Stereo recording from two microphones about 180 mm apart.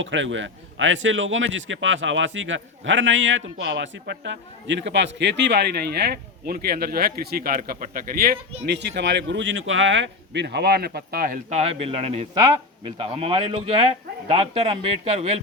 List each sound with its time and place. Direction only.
0.0 s a man's voice: 90° right; by 8.4 s 55° right (ahead or behind)
8.6 s speech: 70° right (ahead or behind)
11.4 s a man's voice: 35° right (ahead or behind)